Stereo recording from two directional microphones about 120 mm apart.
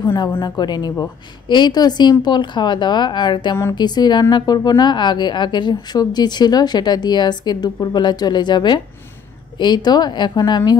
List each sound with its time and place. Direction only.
0.0 s a woman's voice: 40° left (ahead or behind)